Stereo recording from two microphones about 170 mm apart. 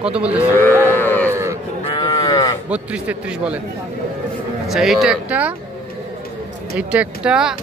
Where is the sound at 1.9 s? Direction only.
20° left (ahead or behind).